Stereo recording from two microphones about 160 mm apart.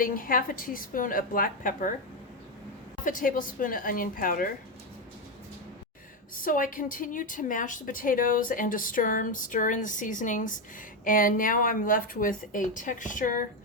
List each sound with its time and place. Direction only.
0.0 s a woman's voice: 60° left (ahead or behind)
3.0 s a woman's voice: 55° left (ahead or behind)
6.3 s a woman's voice: 60° left (ahead or behind)